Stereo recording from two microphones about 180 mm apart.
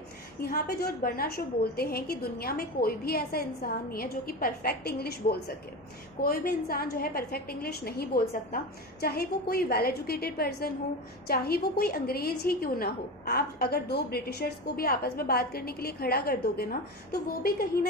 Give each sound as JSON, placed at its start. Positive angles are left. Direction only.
{"t": 0.4, "sound": "a woman's voice", "side_deg": 60}